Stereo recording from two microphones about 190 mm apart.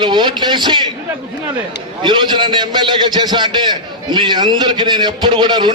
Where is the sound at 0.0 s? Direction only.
25° right (ahead or behind).